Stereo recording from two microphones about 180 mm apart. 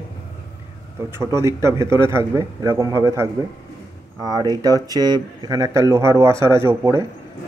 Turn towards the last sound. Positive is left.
turn(degrees=-15)  # may be behind; listen again after turning